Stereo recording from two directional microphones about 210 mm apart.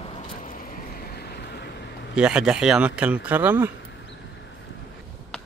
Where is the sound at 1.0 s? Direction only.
50° left (ahead or behind).